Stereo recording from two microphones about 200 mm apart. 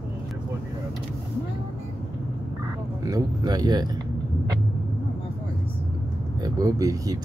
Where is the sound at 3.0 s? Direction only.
20° right (ahead or behind).